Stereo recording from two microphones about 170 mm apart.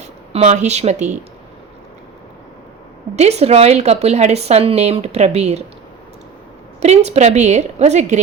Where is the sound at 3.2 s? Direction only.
40° right (ahead or behind).